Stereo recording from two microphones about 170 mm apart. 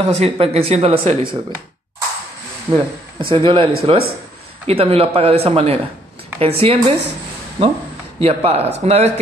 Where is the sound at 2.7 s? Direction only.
30° right (ahead or behind).